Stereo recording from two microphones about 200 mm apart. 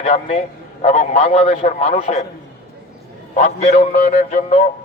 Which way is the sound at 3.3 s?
35° left (ahead or behind).